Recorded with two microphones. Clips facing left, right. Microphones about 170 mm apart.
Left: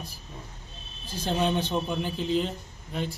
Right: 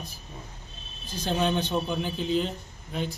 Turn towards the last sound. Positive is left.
turn(degrees=0)  # may be behind; listen again after turning